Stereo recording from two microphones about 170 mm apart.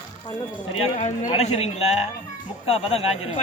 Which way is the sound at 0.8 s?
40° left (ahead or behind).